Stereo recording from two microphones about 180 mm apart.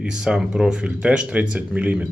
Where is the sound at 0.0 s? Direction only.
5° right (ahead or behind).